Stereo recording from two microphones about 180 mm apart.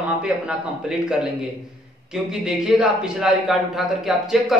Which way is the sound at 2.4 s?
5° right (ahead or behind).